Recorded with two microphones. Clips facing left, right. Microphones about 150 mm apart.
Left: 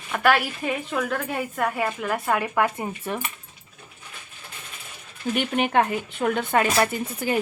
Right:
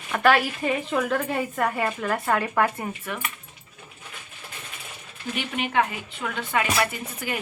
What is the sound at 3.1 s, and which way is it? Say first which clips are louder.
Speech: left 4 dB; 35° left (ahead or behind).